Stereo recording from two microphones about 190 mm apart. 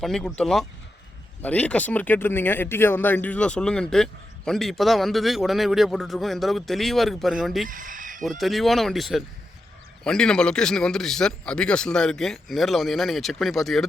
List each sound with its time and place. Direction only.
0.0 s speech: centre (ahead or behind)
7.7 s a sound: 45° right (ahead or behind)
8.4 s speech: centre (ahead or behind)